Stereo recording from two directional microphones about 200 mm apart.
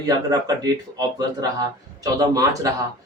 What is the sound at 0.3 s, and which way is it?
A man's voice, 20° right (ahead or behind).